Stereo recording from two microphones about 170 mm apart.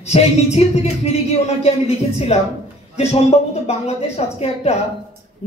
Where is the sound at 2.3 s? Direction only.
40° left (ahead or behind).